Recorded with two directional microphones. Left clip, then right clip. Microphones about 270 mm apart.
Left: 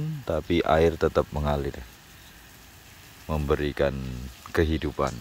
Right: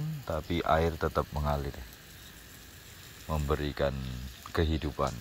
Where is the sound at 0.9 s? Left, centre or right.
Left.